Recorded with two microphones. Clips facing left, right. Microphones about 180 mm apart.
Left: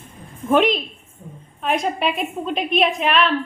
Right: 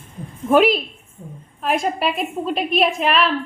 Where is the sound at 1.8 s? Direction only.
Centre (ahead or behind).